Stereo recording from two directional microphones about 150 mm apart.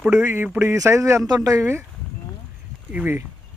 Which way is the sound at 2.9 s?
10° right (ahead or behind).